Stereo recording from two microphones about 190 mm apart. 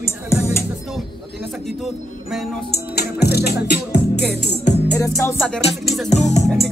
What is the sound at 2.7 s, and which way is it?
Music, 55° left (ahead or behind).